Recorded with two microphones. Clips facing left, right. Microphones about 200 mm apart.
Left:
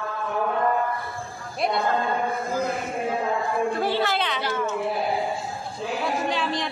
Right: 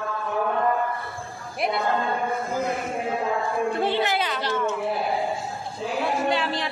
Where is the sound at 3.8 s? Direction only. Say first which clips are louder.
Even; 20° right (ahead or behind).